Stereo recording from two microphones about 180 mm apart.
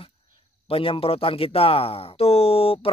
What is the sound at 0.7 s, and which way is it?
Speech, 30° left (ahead or behind).